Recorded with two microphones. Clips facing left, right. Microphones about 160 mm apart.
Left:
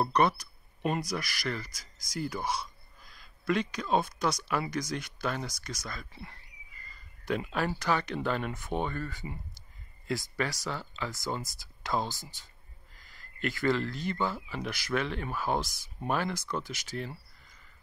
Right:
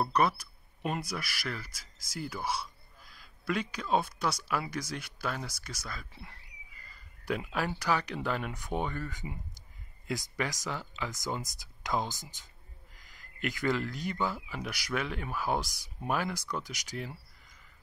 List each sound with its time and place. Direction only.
0.0 s speech: 5° right (ahead or behind)